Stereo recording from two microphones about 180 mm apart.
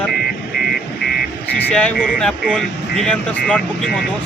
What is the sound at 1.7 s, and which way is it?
Speech, 5° left (ahead or behind).